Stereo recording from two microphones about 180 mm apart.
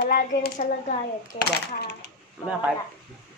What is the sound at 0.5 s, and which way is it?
Speech, 40° left (ahead or behind).